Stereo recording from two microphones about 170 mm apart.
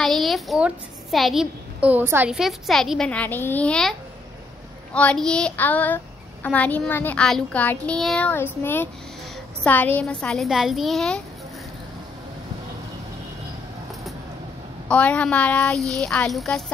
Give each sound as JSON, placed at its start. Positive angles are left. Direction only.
{"t": 0.0, "sound": "a woman's voice", "side_deg": 0}
{"t": 4.9, "sound": "a child's voice", "side_deg": 5}
{"t": 9.6, "sound": "a woman's voice", "side_deg": 10}
{"t": 14.9, "sound": "a woman's voice", "side_deg": 5}